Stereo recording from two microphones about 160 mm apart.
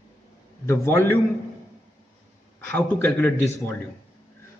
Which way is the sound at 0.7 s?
15° left (ahead or behind).